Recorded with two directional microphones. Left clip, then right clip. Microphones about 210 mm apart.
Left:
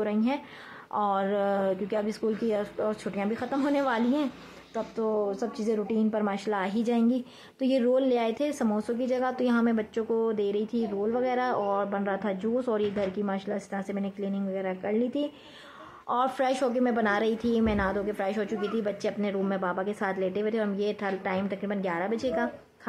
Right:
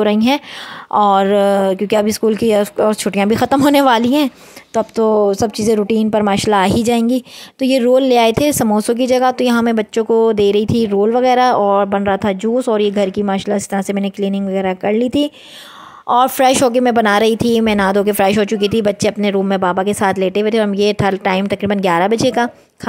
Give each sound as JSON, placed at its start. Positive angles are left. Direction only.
{"t": 0.0, "sound": "speech", "side_deg": -50}